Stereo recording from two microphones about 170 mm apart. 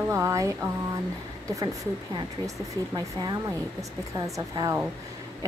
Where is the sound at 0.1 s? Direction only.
15° right (ahead or behind).